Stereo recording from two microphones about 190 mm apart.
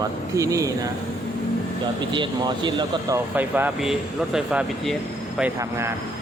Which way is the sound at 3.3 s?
10° right (ahead or behind).